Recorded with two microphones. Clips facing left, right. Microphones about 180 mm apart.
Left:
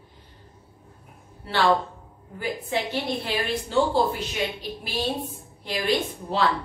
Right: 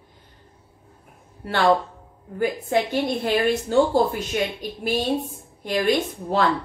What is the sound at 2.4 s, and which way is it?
A woman's voice, 45° right (ahead or behind).